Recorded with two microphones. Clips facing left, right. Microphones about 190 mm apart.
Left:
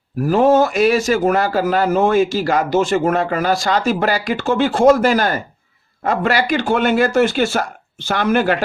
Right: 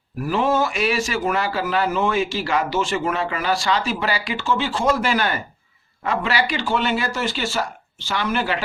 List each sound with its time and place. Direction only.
0.3 s speech: 45° left (ahead or behind)